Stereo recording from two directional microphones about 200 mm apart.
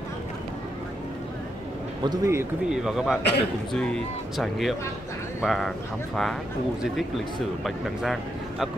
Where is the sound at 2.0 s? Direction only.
15° right (ahead or behind).